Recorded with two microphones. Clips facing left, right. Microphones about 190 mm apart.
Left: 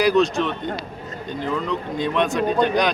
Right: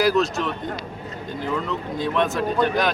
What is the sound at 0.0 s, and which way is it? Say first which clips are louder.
Speech: left 2 dB; 5° right (ahead or behind).